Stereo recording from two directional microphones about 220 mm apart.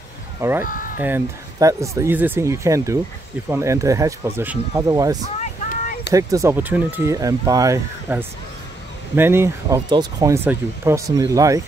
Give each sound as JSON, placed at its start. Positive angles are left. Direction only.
{"t": 0.4, "sound": "speech", "side_deg": -10}
{"t": 0.7, "sound": "a sound", "side_deg": 40}
{"t": 0.9, "sound": "speech", "side_deg": -10}